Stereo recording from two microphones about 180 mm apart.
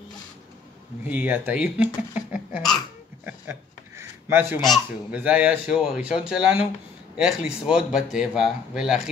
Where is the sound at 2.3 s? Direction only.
5° right (ahead or behind).